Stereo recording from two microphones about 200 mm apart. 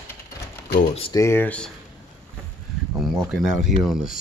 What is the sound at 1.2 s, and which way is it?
Speech, 10° left (ahead or behind).